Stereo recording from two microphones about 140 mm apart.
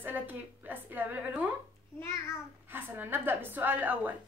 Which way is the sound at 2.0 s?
20° left (ahead or behind).